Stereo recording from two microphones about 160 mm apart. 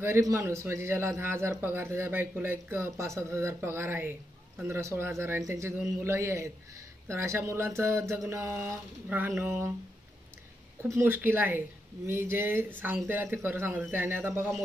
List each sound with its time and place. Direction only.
0.0 s a man's voice: 15° right (ahead or behind)
10.8 s a man's voice: 15° right (ahead or behind)